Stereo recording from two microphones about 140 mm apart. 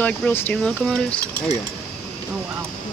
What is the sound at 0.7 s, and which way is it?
Speech, 5° left (ahead or behind).